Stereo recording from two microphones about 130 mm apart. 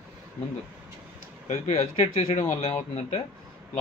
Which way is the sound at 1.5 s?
55° left (ahead or behind).